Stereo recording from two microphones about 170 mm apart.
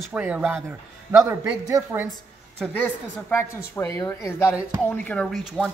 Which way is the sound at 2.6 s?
5° left (ahead or behind).